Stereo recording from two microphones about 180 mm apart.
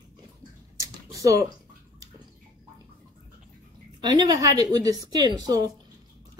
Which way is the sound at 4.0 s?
20° right (ahead or behind).